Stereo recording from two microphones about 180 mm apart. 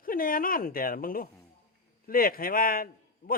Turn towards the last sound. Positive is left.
turn(degrees=50)  # may be behind; listen again after turning